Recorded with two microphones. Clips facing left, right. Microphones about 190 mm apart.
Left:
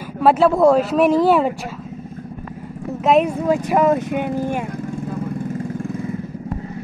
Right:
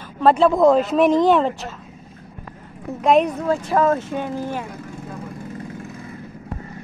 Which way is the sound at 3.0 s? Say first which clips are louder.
Left 1 dB; 5° left (ahead or behind).